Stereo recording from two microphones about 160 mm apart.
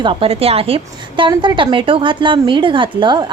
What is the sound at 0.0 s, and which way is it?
A woman's voice, 35° right (ahead or behind).